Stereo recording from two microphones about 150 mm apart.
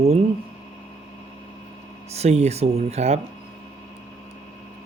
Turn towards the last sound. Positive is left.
turn(degrees=-45)  # may be behind; listen again after turning